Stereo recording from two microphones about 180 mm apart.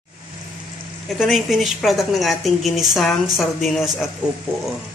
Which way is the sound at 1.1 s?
Centre (ahead or behind).